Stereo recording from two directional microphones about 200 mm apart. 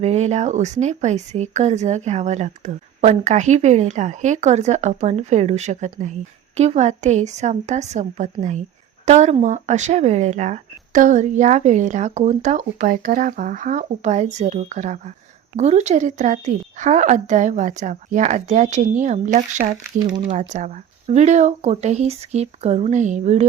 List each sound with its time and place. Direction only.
0.0 s speech: 35° right (ahead or behind)